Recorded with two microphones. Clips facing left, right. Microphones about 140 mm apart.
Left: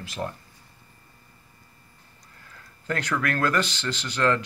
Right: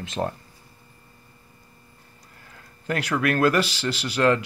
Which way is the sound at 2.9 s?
10° right (ahead or behind).